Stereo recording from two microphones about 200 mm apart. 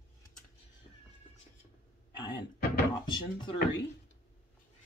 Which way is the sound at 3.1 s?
25° left (ahead or behind).